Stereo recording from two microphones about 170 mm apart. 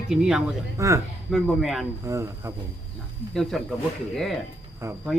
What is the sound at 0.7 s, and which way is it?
Speech, 15° right (ahead or behind).